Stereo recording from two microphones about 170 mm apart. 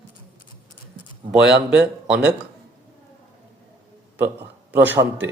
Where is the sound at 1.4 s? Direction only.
5° right (ahead or behind).